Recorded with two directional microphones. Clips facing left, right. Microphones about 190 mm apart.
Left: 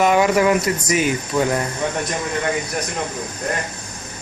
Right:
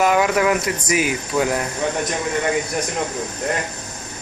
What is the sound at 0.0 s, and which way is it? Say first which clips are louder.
A man's voice: left 2 dB; centre (ahead or behind).